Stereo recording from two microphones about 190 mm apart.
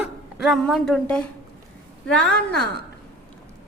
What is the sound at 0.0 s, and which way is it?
A woman's voice, 5° right (ahead or behind).